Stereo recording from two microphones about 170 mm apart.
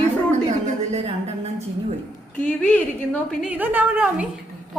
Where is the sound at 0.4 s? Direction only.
40° right (ahead or behind).